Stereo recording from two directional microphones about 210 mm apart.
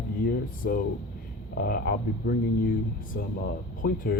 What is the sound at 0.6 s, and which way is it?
Speech, 45° left (ahead or behind).